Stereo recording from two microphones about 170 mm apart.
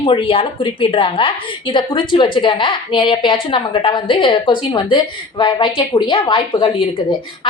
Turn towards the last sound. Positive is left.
turn(degrees=30)  # may be behind; listen again after turning